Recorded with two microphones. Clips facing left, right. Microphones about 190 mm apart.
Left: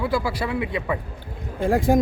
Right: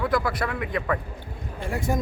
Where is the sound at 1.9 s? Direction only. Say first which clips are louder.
Left 8 dB; 80° left.